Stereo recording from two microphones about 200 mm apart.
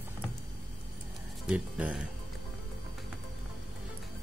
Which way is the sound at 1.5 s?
5° right (ahead or behind).